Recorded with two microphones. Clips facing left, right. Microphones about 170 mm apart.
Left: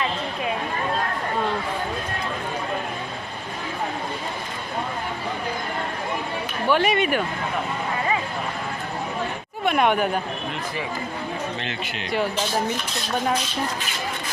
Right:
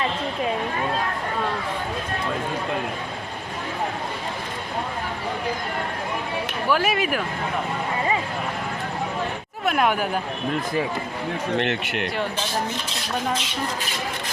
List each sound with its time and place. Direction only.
6.7 s speech: centre (ahead or behind)
9.6 s speech: centre (ahead or behind)
11.5 s speech: 65° right (ahead or behind)